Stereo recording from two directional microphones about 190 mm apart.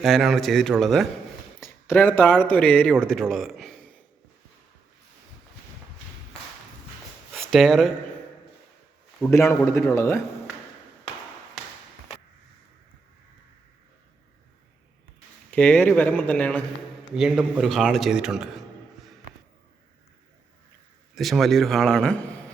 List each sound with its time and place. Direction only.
0.0 s a man's voice: centre (ahead or behind)
7.3 s speech: centre (ahead or behind)
9.2 s speech: 15° left (ahead or behind)
15.4 s speech: 5° left (ahead or behind)
17.2 s a man's voice: 5° right (ahead or behind)
21.2 s a man's voice: centre (ahead or behind)